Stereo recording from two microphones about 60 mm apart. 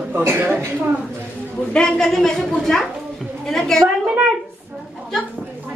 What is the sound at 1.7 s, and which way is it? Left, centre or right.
A man's voice, centre.